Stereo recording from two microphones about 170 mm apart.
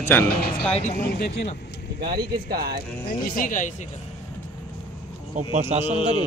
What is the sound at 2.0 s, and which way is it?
Speech, 65° right (ahead or behind).